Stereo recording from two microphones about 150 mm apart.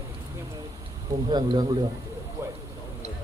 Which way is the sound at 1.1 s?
30° right (ahead or behind).